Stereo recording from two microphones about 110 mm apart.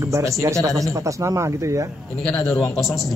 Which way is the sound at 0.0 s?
25° right (ahead or behind).